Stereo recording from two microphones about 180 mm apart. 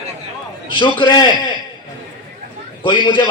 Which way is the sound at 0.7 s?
25° left (ahead or behind).